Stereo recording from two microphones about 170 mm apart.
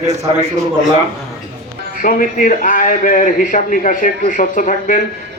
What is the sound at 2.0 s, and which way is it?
A man's voice, 55° left (ahead or behind).